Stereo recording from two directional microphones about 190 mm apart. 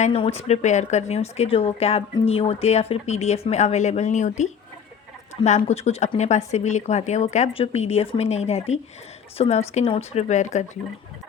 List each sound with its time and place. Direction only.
0.0 s speech: 35° left (ahead or behind)
5.5 s speech: 35° left (ahead or behind)